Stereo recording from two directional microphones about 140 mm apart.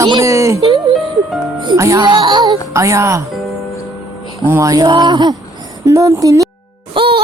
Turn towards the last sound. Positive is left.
turn(degrees=-35)  # may be behind; listen again after turning